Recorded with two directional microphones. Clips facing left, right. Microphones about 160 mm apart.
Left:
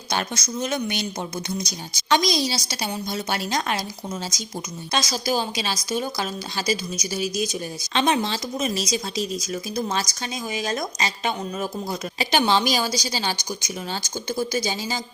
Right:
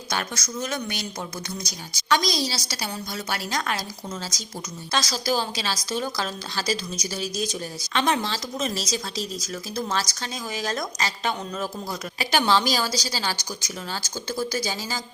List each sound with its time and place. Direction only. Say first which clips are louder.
0.1 s a woman's voice: left 3 dB; 20° left (ahead or behind)